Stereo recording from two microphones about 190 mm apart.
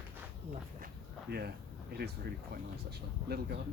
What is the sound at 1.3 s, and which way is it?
Speech, 60° right (ahead or behind).